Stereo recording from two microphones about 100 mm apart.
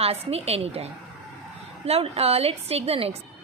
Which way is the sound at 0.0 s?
90° right.